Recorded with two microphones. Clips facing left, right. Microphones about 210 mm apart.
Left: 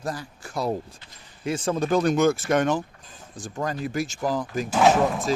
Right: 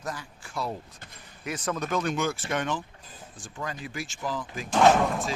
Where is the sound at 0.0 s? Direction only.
35° left (ahead or behind).